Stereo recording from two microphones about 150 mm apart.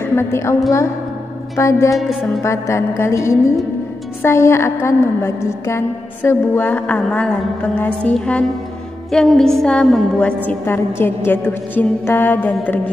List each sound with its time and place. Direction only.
0.0 s a woman's voice: 15° left (ahead or behind)
1.6 s a woman's voice: 20° left (ahead or behind)
2.0 s speech: centre (ahead or behind)
2.4 s a woman's voice: 20° left (ahead or behind)